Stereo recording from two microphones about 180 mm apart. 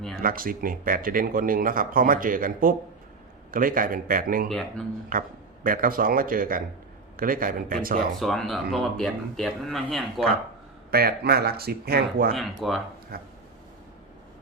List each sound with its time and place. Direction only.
0.2 s speech: 50° right (ahead or behind)
4.4 s speech: centre (ahead or behind)
5.1 s speech: 50° right (ahead or behind)
8.1 s speech: centre (ahead or behind)
10.9 s speech: 60° right (ahead or behind)
12.3 s speech: centre (ahead or behind)
13.1 s speech: 55° right (ahead or behind)